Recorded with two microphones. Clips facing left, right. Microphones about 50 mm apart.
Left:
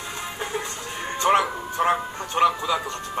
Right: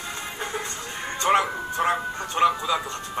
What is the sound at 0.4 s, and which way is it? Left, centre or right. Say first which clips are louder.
Music: left 2 dB; centre.